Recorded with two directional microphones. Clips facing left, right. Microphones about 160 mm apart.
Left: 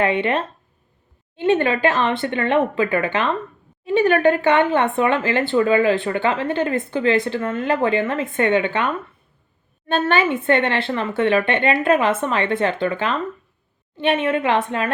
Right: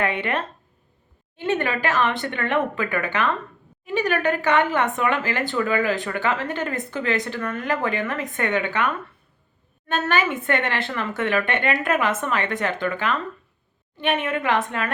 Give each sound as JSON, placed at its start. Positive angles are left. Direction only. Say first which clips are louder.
{"t": 0.0, "sound": "speech", "louder": "left 5 dB", "side_deg": 25}
{"t": 9.9, "sound": "speech", "louder": "left 4 dB", "side_deg": 25}